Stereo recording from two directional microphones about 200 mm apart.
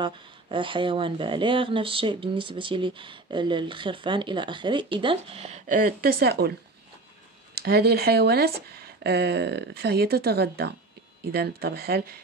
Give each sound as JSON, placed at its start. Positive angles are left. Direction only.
{"t": 0.0, "sound": "speech", "side_deg": -25}
{"t": 7.5, "sound": "speech", "side_deg": -50}